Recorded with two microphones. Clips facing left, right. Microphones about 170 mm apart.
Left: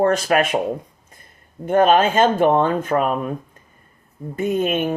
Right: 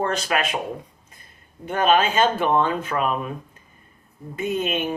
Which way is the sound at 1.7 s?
45° left (ahead or behind).